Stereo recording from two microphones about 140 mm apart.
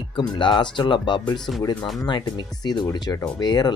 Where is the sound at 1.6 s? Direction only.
30° left (ahead or behind).